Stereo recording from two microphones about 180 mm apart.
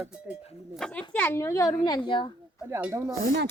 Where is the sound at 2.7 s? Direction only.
15° right (ahead or behind).